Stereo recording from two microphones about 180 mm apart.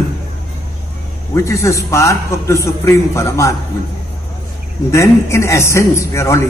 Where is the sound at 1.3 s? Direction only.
15° left (ahead or behind).